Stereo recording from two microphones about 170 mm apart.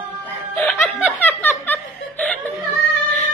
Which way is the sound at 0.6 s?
Centre (ahead or behind).